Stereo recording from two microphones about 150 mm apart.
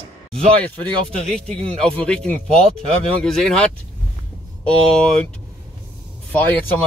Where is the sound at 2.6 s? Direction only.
40° right (ahead or behind).